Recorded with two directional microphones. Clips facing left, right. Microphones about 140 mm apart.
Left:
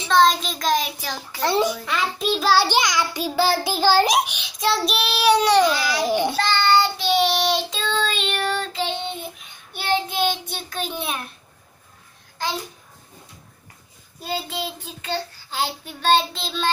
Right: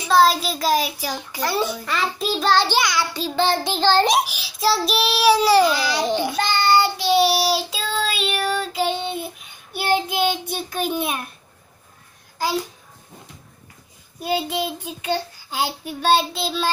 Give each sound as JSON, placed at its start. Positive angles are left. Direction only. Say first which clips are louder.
{"t": 0.1, "sound": "child singing", "louder": "right 1 dB", "side_deg": -5}
{"t": 1.4, "sound": "a child's voice", "louder": "left 3 dB", "side_deg": 25}
{"t": 1.9, "sound": "child singing", "louder": "even", "side_deg": 0}
{"t": 14.2, "sound": "child singing", "louder": "right 5 dB", "side_deg": -15}